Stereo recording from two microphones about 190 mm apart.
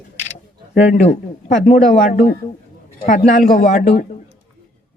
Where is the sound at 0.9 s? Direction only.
40° left (ahead or behind).